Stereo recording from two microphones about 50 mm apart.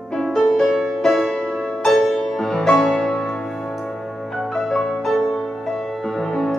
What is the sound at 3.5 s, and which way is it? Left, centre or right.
Music, centre.